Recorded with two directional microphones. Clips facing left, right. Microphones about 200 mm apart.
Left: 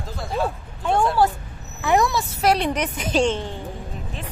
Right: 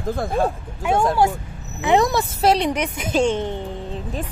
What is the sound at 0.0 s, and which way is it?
Speech, 50° right (ahead or behind).